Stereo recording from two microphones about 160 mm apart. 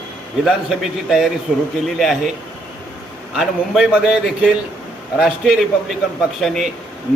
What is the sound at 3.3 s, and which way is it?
A man's voice, 5° right (ahead or behind).